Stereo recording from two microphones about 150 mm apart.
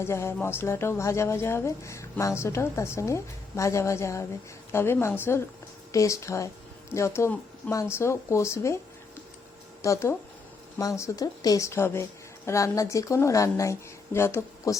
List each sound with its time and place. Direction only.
0.0 s speech: 15° left (ahead or behind)
9.8 s speech: 20° left (ahead or behind)